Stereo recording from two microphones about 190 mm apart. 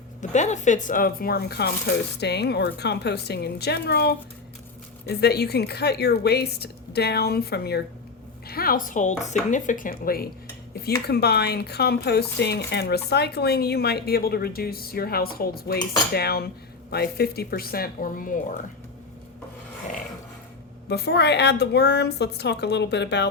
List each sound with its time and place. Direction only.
0.2 s speech: 40° left (ahead or behind)
20.9 s speech: 60° left (ahead or behind)